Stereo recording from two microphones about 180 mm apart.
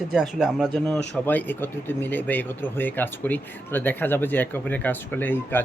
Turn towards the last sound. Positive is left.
turn(degrees=10)  # may be behind; listen again after turning